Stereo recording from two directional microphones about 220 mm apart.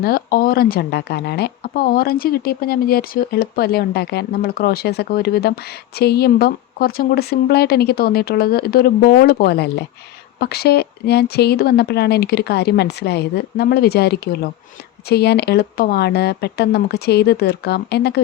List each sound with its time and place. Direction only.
0.0 s speech: 40° left (ahead or behind)